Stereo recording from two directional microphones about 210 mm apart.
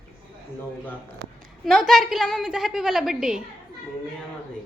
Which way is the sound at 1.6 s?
Centre (ahead or behind).